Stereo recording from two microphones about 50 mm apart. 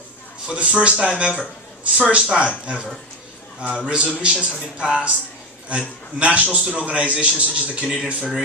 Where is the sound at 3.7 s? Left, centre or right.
Centre.